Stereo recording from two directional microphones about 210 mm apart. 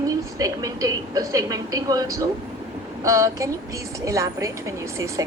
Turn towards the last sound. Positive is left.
turn(degrees=-15)  # may be behind; listen again after turning